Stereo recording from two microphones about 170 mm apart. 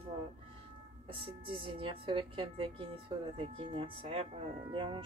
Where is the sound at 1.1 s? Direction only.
30° right (ahead or behind).